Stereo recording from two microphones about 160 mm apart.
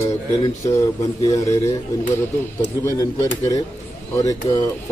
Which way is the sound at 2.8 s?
20° left (ahead or behind).